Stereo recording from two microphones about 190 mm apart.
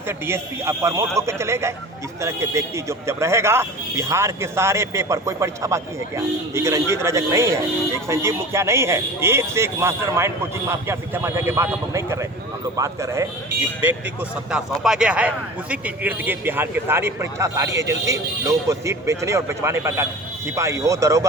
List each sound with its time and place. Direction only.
0.1 s speech: 15° right (ahead or behind)
14.5 s speech: 5° right (ahead or behind)